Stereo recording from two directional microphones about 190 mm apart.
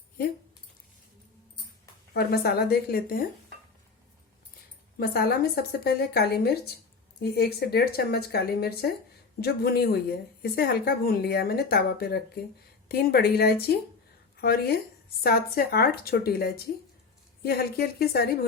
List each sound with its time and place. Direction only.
2.1 s speech: 55° left (ahead or behind)
4.9 s speech: 55° left (ahead or behind)